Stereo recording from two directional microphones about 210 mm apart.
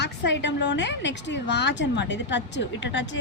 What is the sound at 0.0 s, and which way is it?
A woman's voice, 60° left (ahead or behind).